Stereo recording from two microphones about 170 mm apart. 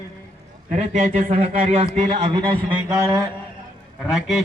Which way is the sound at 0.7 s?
45° right (ahead or behind).